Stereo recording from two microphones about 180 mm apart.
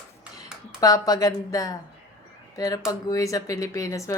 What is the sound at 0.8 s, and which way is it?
A woman's voice, 20° left (ahead or behind).